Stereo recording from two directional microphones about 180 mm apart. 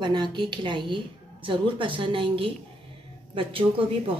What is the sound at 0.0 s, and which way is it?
A woman's voice, 25° right (ahead or behind).